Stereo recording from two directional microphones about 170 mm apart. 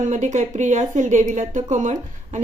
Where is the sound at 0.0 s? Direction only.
45° right (ahead or behind).